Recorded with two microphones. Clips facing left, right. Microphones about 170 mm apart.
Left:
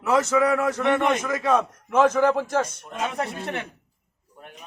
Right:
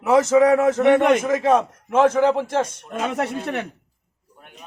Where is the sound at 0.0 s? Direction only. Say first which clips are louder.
Right 5 dB; 20° right (ahead or behind).